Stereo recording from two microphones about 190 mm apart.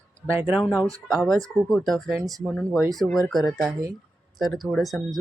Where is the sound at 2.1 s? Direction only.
20° right (ahead or behind).